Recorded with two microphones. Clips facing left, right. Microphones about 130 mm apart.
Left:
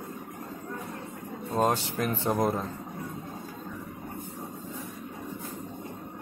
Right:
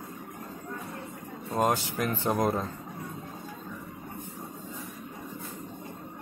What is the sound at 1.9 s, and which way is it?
Speech, 25° left (ahead or behind).